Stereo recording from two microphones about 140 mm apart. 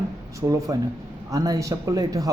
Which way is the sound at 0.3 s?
25° right (ahead or behind).